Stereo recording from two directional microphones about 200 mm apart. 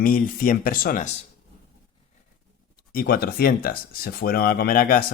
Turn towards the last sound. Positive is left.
turn(degrees=45)  # may be behind; listen again after turning